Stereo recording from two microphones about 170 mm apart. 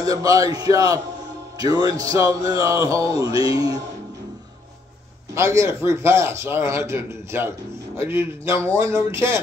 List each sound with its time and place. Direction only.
0.0 s speech: 20° right (ahead or behind)
5.3 s a man's voice: 15° right (ahead or behind)